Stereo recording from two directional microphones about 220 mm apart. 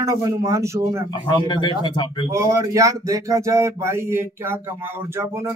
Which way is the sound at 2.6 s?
15° right (ahead or behind).